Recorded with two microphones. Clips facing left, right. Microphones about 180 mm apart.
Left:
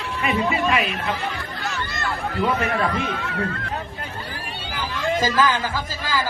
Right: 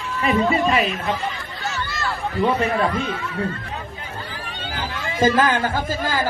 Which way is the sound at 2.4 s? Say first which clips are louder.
Right 3 dB; 35° right (ahead or behind).